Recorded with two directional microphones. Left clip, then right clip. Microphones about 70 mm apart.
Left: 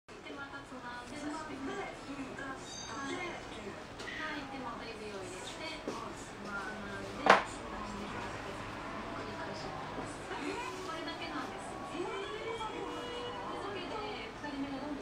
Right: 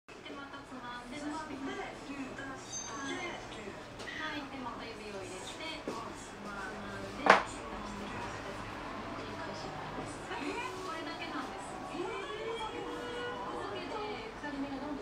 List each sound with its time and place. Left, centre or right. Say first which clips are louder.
7.3 s music: right 1 dB; left